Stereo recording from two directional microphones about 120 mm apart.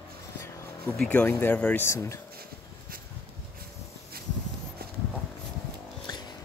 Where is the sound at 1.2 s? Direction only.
15° left (ahead or behind).